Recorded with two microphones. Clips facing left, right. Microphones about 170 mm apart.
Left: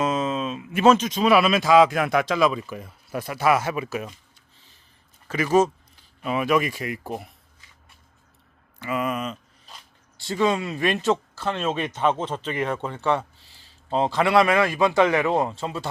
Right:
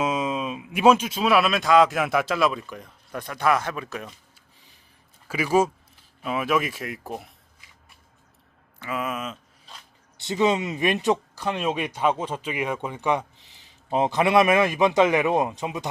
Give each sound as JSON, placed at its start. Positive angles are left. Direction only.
{"t": 0.0, "sound": "speech", "side_deg": -10}
{"t": 5.3, "sound": "speech", "side_deg": -10}
{"t": 8.8, "sound": "a sound", "side_deg": 0}
{"t": 10.2, "sound": "speech", "side_deg": -20}